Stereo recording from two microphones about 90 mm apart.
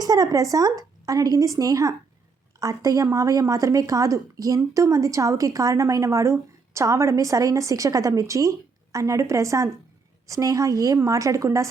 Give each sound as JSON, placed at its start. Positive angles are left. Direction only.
{"t": 0.0, "sound": "a woman's voice", "side_deg": -45}